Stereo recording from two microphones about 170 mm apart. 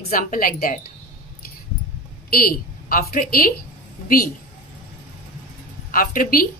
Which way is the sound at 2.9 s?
60° left (ahead or behind).